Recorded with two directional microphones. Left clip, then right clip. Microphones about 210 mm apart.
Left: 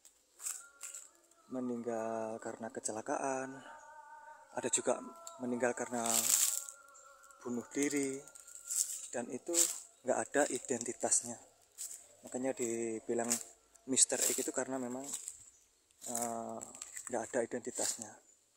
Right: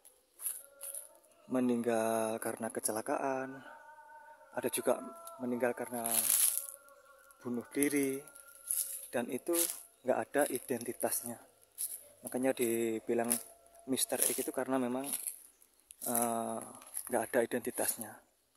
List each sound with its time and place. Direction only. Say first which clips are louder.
1.5 s speech: right 7 dB; 20° right (ahead or behind)
8.7 s a sound: left 6 dB; centre (ahead or behind)
9.1 s speech: right 9 dB; 15° right (ahead or behind)
9.5 s speech: left 2 dB; 5° left (ahead or behind)
10.0 s speech: right 1 dB; 5° right (ahead or behind)
14.7 s speech: right 6 dB; 20° right (ahead or behind)
16.1 s speech: right 5 dB; 20° right (ahead or behind)
16.7 s a sound: left 2 dB; centre (ahead or behind)
17.1 s speech: right 4 dB; 15° right (ahead or behind)